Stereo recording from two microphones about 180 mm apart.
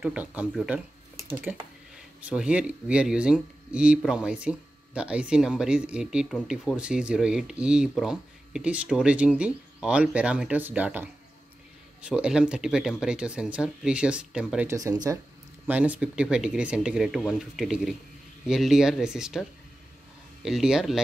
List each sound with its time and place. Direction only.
0.0 s speech: 5° right (ahead or behind)
14.7 s speech: 20° right (ahead or behind)
20.4 s speech: centre (ahead or behind)